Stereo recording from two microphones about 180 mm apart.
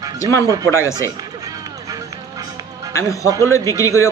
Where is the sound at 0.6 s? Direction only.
15° left (ahead or behind).